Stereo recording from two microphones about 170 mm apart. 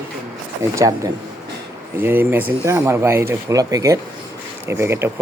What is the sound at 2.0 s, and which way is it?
Speech, 10° right (ahead or behind).